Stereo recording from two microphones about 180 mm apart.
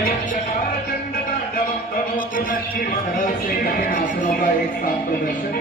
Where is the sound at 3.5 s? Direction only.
55° left (ahead or behind).